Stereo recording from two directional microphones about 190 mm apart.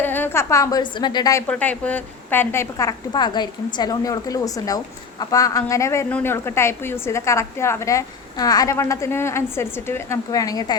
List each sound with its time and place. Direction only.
0.0 s a woman's voice: 10° left (ahead or behind)